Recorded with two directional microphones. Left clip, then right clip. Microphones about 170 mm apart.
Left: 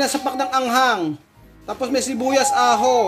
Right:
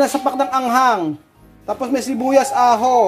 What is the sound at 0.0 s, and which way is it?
Speech, 15° right (ahead or behind).